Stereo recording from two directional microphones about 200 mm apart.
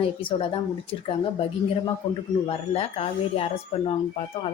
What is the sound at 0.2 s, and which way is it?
Speech, 25° left (ahead or behind).